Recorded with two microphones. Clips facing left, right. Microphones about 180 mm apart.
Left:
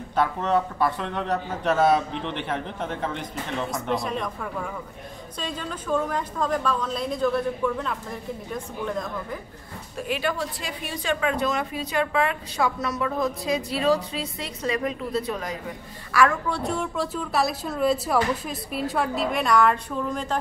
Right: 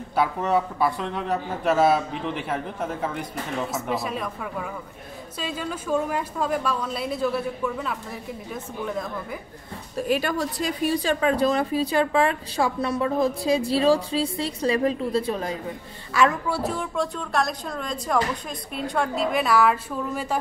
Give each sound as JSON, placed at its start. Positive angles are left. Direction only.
{"t": 0.1, "sound": "a woman's voice", "side_deg": -10}
{"t": 9.9, "sound": "a woman's voice", "side_deg": -40}
{"t": 16.4, "sound": "a woman's voice", "side_deg": -5}